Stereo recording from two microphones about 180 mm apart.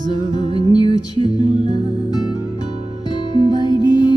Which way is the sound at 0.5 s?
30° right (ahead or behind).